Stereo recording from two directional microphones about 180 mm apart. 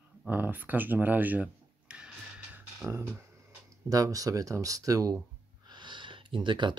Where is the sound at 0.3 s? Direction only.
10° right (ahead or behind).